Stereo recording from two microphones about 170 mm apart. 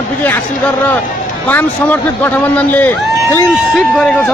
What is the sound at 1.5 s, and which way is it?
A man's voice, 10° left (ahead or behind).